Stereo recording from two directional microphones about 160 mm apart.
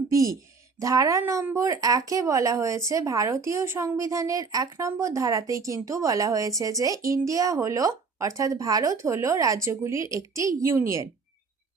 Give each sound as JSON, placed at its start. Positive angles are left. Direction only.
{"t": 0.1, "sound": "speech", "side_deg": -20}